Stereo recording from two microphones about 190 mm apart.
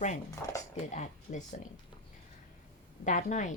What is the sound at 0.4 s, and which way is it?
Speech, 20° left (ahead or behind).